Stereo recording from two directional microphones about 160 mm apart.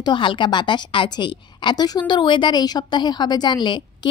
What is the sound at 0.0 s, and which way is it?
A woman's voice, 30° left (ahead or behind).